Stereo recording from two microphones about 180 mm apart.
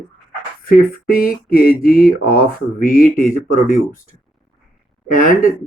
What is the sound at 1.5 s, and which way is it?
Speech, 55° left (ahead or behind).